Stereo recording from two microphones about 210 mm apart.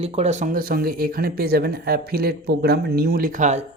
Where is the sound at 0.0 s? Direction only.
30° right (ahead or behind).